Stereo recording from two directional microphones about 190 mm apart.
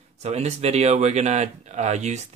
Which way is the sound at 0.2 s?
35° right (ahead or behind).